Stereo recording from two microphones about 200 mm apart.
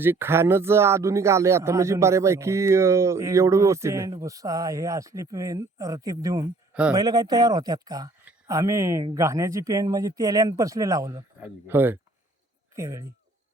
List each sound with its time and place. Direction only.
0.0 s speech: 10° right (ahead or behind)